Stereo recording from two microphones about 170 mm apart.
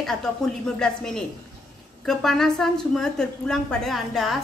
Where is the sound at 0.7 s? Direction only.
5° left (ahead or behind).